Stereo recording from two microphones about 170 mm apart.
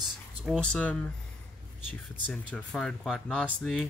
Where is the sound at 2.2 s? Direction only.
5° left (ahead or behind).